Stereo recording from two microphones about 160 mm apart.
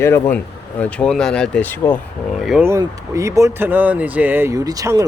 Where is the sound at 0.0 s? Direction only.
15° left (ahead or behind).